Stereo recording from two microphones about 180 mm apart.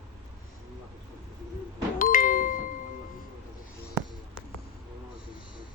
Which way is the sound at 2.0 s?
50° left (ahead or behind).